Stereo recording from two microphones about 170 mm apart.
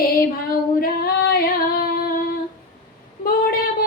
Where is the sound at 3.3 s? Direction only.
60° left (ahead or behind).